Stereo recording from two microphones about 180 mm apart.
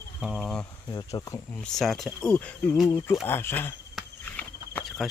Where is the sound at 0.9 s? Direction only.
20° left (ahead or behind).